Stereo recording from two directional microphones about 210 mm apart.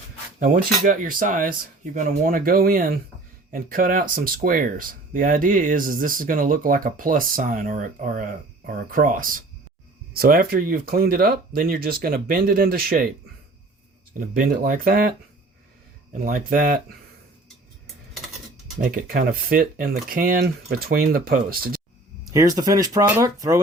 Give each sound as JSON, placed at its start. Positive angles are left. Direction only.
{"t": 0.3, "sound": "speech", "side_deg": -40}
{"t": 14.1, "sound": "speech", "side_deg": -45}
{"t": 16.1, "sound": "speech", "side_deg": -45}
{"t": 18.8, "sound": "speech", "side_deg": -45}
{"t": 22.2, "sound": "speech", "side_deg": -15}